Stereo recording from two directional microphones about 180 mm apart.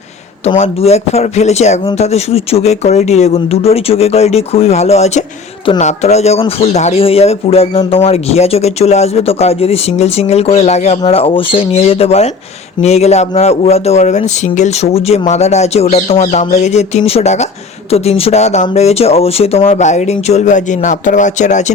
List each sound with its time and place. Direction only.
0.4 s speech: 35° left (ahead or behind)